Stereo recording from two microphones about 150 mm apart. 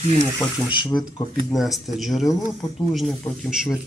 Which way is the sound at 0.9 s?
5° left (ahead or behind).